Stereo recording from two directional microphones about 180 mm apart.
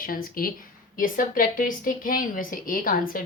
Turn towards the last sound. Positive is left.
turn(degrees=50)  # may be behind; listen again after turning